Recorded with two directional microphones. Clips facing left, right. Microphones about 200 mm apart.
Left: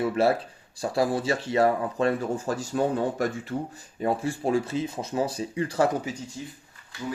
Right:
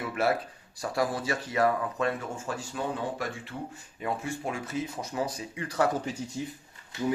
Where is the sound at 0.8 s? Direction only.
30° left (ahead or behind).